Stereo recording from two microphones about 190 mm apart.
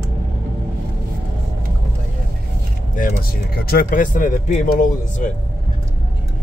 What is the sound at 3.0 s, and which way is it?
Speech, 45° left (ahead or behind).